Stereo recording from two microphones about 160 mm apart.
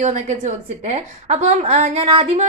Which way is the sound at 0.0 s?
45° right (ahead or behind).